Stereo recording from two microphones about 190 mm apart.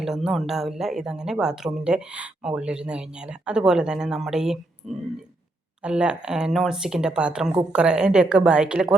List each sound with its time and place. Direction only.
0.0 s speech: centre (ahead or behind)